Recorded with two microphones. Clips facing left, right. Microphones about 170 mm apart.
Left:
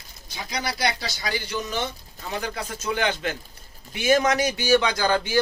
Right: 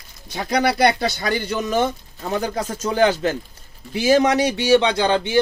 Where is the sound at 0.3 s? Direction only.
60° right (ahead or behind).